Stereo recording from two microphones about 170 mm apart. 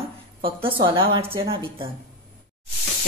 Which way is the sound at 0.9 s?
30° right (ahead or behind).